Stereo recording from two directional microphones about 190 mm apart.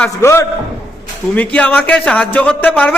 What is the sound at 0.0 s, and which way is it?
A man's voice, 15° left (ahead or behind).